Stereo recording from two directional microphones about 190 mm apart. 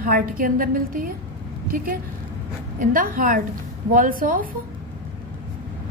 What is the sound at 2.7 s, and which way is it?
A woman's voice, 45° right (ahead or behind).